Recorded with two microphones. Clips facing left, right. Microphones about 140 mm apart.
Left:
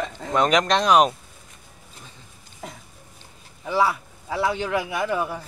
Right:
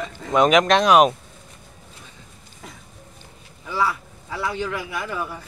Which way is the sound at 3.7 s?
20° left (ahead or behind).